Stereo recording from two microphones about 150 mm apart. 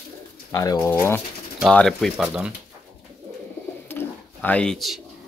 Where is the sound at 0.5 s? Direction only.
25° left (ahead or behind).